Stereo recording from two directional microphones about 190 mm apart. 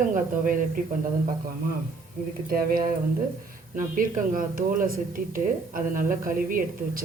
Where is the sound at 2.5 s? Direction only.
50° right (ahead or behind).